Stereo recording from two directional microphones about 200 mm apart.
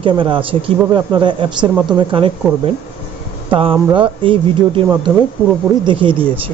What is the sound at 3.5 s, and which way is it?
Speech, 25° right (ahead or behind).